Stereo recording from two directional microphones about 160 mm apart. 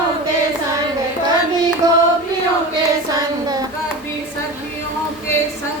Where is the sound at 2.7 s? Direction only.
25° right (ahead or behind).